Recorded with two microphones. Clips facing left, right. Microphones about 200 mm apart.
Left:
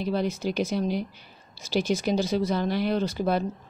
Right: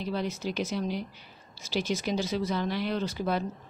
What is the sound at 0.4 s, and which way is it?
Speech, 50° left (ahead or behind).